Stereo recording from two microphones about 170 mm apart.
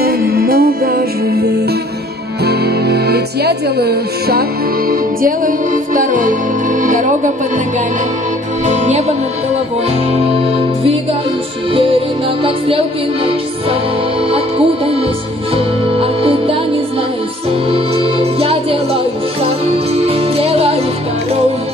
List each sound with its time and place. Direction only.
0.0 s music: 60° right (ahead or behind)
2.4 s speech: 70° right (ahead or behind)
5.9 s music: 50° right (ahead or behind)
8.6 s speech: 40° right (ahead or behind)
11.7 s music: 30° right (ahead or behind)
15.5 s music: 35° right (ahead or behind)
17.6 s music: 35° right (ahead or behind)
20.0 s music: 35° right (ahead or behind)